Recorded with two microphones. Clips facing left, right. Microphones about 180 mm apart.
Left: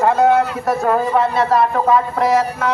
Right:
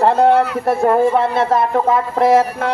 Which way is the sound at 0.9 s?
25° right (ahead or behind).